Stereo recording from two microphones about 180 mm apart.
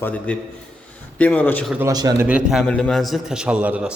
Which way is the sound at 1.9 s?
20° right (ahead or behind).